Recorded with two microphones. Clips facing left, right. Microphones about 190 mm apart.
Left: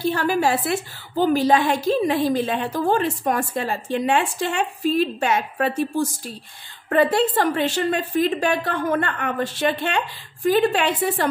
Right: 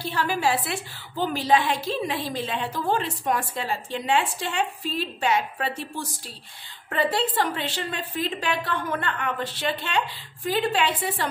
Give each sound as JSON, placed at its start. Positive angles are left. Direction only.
{"t": 0.0, "sound": "a woman's voice", "side_deg": 50}